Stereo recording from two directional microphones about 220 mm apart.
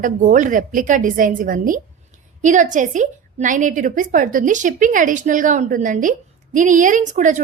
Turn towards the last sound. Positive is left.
turn(degrees=-35)  # may be behind; listen again after turning